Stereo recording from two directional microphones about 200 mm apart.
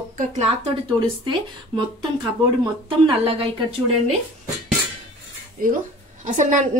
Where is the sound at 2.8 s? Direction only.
25° right (ahead or behind).